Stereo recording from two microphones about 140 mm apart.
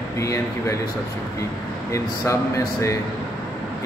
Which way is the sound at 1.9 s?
20° left (ahead or behind).